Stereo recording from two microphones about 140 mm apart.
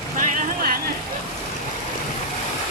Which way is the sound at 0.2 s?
70° right (ahead or behind).